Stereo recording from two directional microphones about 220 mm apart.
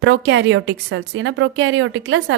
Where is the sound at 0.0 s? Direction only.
50° right (ahead or behind).